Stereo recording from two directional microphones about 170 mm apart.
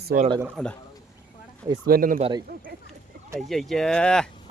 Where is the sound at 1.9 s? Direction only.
55° right (ahead or behind).